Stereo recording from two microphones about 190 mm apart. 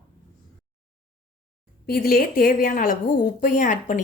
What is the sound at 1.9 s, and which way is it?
Speech, 55° left (ahead or behind).